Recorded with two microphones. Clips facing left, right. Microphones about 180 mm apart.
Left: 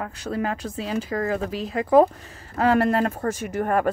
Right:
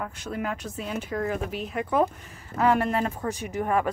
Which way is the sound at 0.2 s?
35° left (ahead or behind).